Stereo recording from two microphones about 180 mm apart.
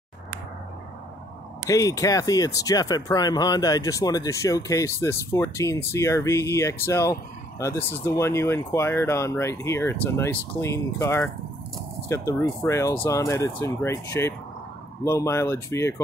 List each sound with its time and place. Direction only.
1.7 s speech: 20° left (ahead or behind)